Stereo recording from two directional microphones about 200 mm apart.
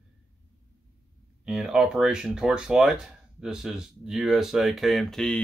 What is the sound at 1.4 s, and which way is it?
Speech, 5° right (ahead or behind).